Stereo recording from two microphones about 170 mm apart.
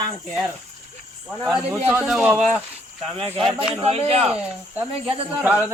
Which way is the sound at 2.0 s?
Centre (ahead or behind).